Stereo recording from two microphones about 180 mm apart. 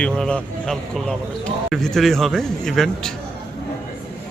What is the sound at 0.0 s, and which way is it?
Speech, 5° left (ahead or behind).